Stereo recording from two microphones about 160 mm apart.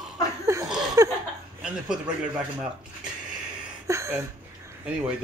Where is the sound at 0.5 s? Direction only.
20° right (ahead or behind).